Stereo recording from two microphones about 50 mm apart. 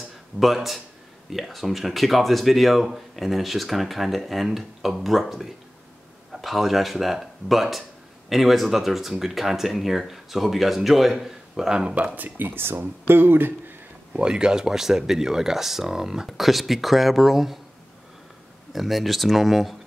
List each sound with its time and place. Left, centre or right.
0.4 s speech: centre; by 12.2 s right
12.2 s speech: right
14.1 s speech: centre
18.7 s speech: centre